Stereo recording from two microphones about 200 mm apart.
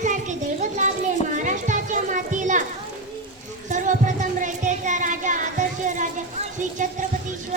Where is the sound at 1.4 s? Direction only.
40° right (ahead or behind).